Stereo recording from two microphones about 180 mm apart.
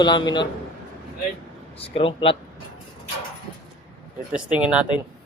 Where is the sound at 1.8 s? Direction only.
30° left (ahead or behind).